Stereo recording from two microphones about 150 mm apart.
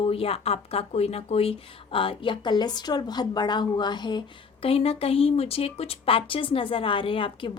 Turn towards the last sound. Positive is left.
turn(degrees=35)  # may be behind; listen again after turning